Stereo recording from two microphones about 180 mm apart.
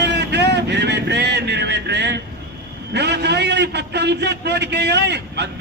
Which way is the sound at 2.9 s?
65° right (ahead or behind).